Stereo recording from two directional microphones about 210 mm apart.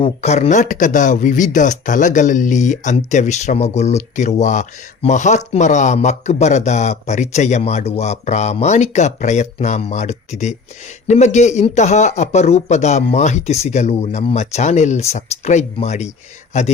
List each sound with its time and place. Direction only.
0.0 s speech: 30° left (ahead or behind)